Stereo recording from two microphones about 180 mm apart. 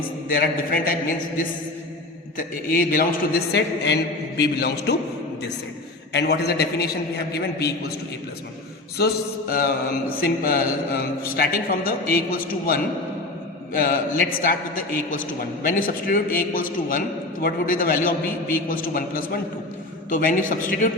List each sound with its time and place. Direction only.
0.3 s mantra: 55° left (ahead or behind)
2.6 s a man's voice: 50° left (ahead or behind); by 5.0 s 65° left (ahead or behind)
6.1 s mantra: 65° left (ahead or behind)
9.0 s mantra: 60° left (ahead or behind)
13.7 s a man's voice: 55° left (ahead or behind)